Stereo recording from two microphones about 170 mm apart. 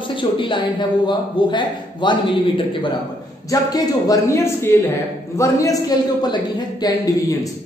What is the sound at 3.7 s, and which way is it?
A man's voice, 20° left (ahead or behind).